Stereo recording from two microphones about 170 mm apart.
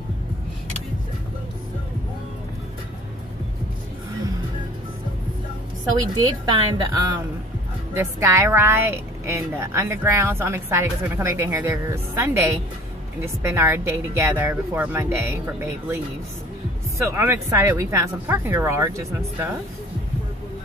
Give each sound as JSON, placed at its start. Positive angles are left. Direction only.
{"t": 6.1, "sound": "a woman's voice", "side_deg": -25}
{"t": 7.9, "sound": "speech", "side_deg": -15}
{"t": 17.0, "sound": "speech", "side_deg": -15}